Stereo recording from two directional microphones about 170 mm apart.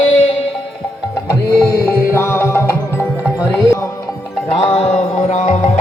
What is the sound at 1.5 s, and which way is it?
Music, 15° left (ahead or behind).